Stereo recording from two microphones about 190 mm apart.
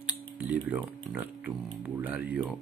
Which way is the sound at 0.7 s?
10° right (ahead or behind).